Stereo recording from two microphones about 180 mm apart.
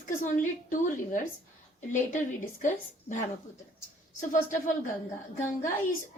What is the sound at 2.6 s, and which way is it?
Speech, 45° left (ahead or behind).